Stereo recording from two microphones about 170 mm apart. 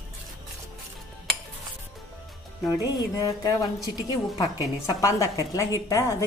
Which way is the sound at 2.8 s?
20° left (ahead or behind).